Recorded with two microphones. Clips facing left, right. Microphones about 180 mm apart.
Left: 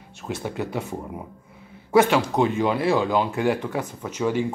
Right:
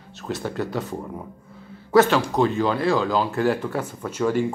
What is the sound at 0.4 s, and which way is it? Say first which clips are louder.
Speech: right 1 dB; 10° left (ahead or behind).